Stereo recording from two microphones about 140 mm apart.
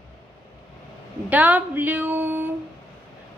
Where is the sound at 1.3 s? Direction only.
10° right (ahead or behind).